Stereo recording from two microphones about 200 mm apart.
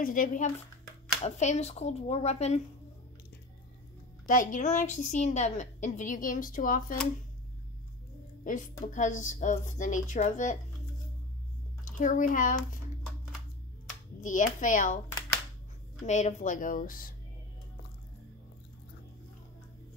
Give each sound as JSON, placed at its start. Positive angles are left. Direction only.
{"t": 0.0, "sound": "a woman's voice", "side_deg": 45}
{"t": 4.3, "sound": "a woman's voice", "side_deg": 40}
{"t": 8.5, "sound": "a woman's voice", "side_deg": 40}
{"t": 12.0, "sound": "a woman's voice", "side_deg": 40}
{"t": 14.2, "sound": "a woman's voice", "side_deg": 40}
{"t": 16.1, "sound": "a woman's voice", "side_deg": 35}